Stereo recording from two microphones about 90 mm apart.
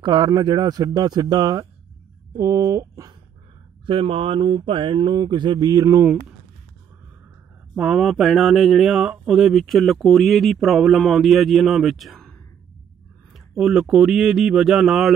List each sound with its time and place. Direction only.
0.0 s a man's voice: 55° right (ahead or behind)
2.3 s speech: 35° right (ahead or behind)
3.8 s speech: 80° right
4.4 s mantra: 55° right (ahead or behind)
5.7 s speech: 40° right (ahead or behind)
7.7 s speech: 5° right (ahead or behind)